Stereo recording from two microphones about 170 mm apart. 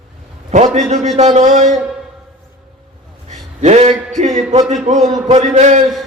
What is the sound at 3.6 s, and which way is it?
Speech, 40° right (ahead or behind).